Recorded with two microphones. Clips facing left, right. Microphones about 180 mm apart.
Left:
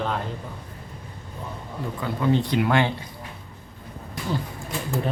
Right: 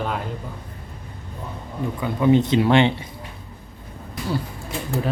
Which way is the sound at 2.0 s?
15° right (ahead or behind).